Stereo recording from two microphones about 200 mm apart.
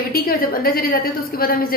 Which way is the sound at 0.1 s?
50° left (ahead or behind).